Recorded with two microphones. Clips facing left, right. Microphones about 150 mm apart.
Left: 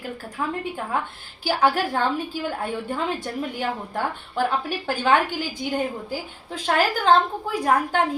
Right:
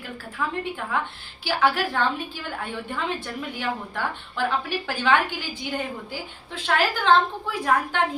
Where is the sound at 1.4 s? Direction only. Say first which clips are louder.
Left 2 dB; 40° left (ahead or behind).